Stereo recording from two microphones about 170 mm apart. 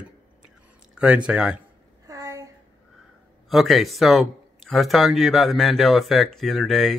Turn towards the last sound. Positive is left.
turn(degrees=0)  # may be behind; listen again after turning